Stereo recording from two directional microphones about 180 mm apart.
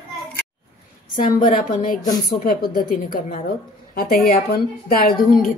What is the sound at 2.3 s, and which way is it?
A woman's voice, 55° left (ahead or behind).